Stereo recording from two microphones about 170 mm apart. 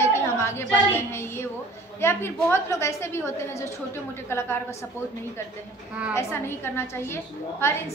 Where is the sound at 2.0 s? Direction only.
15° left (ahead or behind).